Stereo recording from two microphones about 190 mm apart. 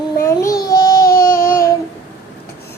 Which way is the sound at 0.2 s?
15° left (ahead or behind).